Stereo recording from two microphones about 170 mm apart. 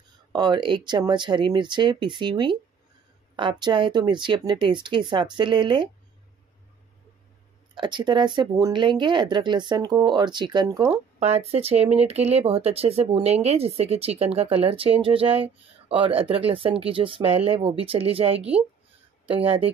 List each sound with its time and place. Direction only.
0.3 s speech: 25° right (ahead or behind)
7.7 s speech: 30° right (ahead or behind)
11.1 s speech: 40° right (ahead or behind)